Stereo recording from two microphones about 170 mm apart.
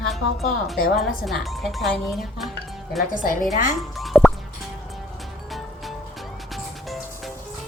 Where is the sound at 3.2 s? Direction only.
55° left (ahead or behind).